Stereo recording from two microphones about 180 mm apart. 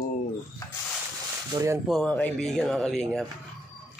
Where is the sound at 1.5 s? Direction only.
15° right (ahead or behind).